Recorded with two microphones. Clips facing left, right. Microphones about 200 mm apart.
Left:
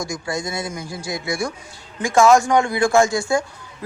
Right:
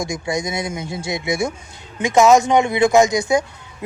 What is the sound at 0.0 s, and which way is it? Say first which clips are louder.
Speech: right 3 dB; 20° right (ahead or behind).